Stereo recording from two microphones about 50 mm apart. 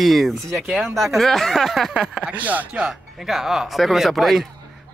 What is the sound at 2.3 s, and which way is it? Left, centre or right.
Speech, right.